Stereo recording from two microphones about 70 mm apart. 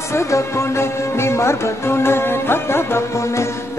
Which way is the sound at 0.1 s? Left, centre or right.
Left.